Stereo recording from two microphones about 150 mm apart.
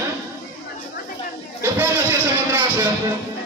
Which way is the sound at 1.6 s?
15° right (ahead or behind).